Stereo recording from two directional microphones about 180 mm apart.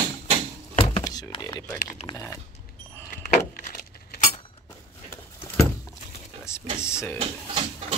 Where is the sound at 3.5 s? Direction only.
50° left (ahead or behind).